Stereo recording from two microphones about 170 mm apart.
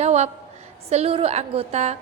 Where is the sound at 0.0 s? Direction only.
40° right (ahead or behind).